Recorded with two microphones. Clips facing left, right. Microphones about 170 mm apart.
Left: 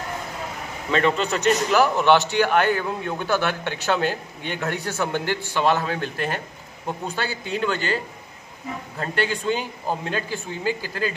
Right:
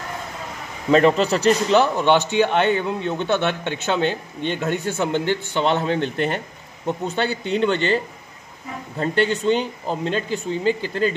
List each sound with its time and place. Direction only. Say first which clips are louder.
0.9 s speech: right 6 dB; 35° right (ahead or behind)
9.0 s speech: right 5 dB; 25° right (ahead or behind)